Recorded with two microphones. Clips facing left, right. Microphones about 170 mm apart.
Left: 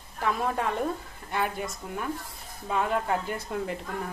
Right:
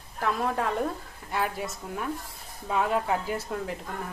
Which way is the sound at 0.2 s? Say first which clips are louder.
Even; centre (ahead or behind).